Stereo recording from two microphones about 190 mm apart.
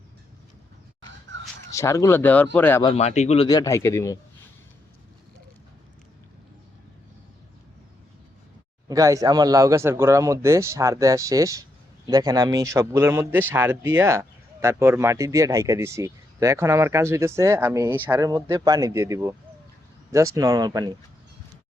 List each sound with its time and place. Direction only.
1.3 s a sound: 70° right (ahead or behind)
1.7 s speech: 15° left (ahead or behind)
2.8 s speech: 35° left (ahead or behind); by 4.2 s 15° left (ahead or behind)
8.9 s speech: 15° right (ahead or behind)